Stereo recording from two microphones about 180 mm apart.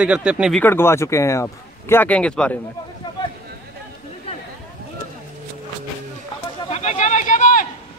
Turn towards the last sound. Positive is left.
turn(degrees=45)  # may be behind; listen again after turning